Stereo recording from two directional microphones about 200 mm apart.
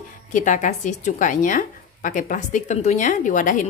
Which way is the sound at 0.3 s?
40° left (ahead or behind).